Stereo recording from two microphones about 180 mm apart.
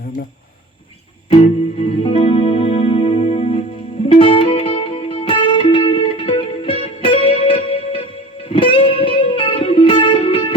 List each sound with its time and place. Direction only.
1.8 s music: 30° left (ahead or behind)